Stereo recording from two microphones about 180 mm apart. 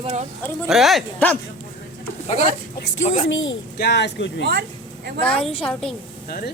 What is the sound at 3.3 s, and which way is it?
Speech, 90° left.